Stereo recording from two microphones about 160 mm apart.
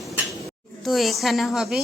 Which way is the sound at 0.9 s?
Centre (ahead or behind).